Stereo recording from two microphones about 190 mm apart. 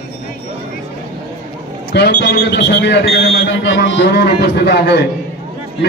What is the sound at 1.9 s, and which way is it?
A man's voice, 65° left (ahead or behind).